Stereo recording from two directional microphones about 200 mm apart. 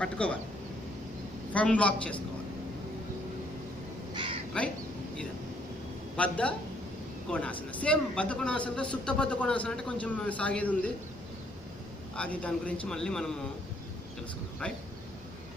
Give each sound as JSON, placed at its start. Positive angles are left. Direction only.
{"t": 0.0, "sound": "a man's voice", "side_deg": 5}
{"t": 1.5, "sound": "a man's voice", "side_deg": 5}
{"t": 4.1, "sound": "crow", "side_deg": -25}
{"t": 6.1, "sound": "a man's voice", "side_deg": 5}
{"t": 12.2, "sound": "a man's voice", "side_deg": 5}